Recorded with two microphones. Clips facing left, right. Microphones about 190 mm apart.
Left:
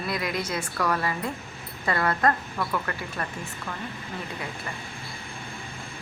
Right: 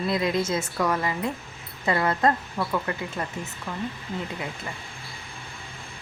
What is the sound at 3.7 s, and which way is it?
Speech, 5° right (ahead or behind).